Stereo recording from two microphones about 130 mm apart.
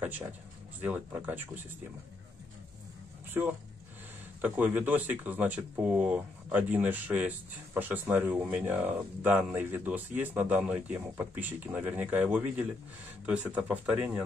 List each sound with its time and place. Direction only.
0.8 s speech: 10° right (ahead or behind)
4.4 s speech: 15° right (ahead or behind)